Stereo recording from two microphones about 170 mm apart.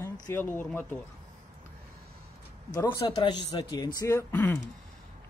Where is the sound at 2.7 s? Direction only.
20° left (ahead or behind).